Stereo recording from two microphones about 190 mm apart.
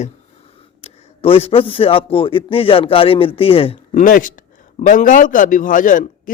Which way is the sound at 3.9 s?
45° left (ahead or behind).